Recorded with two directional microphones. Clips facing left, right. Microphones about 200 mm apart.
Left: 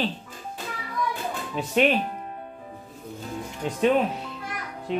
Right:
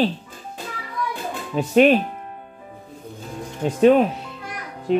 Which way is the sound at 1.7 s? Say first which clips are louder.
Right 7 dB; 45° right (ahead or behind).